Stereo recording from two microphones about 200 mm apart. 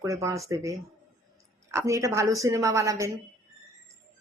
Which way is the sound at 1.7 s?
15° right (ahead or behind).